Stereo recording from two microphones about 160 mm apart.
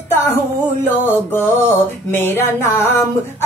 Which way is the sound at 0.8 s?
15° left (ahead or behind).